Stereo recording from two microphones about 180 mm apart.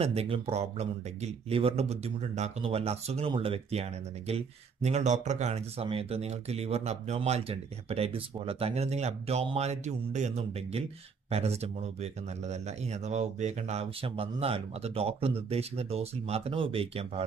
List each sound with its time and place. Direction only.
0.0 s speech: 35° right (ahead or behind)